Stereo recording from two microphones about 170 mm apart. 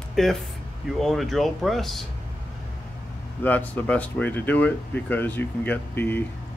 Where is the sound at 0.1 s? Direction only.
Centre (ahead or behind).